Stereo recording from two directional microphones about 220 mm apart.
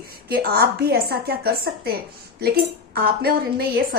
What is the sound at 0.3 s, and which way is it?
A woman's voice, 45° right (ahead or behind).